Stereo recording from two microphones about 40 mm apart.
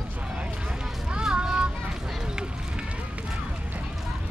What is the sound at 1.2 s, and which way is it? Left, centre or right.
Child singing, centre.